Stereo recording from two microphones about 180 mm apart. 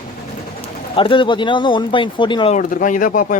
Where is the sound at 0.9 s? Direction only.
30° left (ahead or behind).